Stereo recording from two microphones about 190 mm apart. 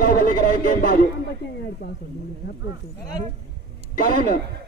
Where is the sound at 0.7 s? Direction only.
50° left (ahead or behind).